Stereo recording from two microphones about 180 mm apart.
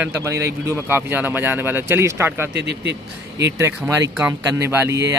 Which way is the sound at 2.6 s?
75° right (ahead or behind).